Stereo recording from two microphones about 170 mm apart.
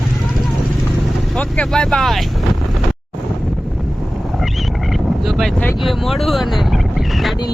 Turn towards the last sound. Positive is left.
turn(degrees=0)  # may be behind; listen again after turning